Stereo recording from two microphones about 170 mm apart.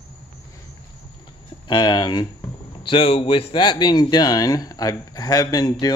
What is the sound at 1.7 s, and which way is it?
Speech, 25° left (ahead or behind).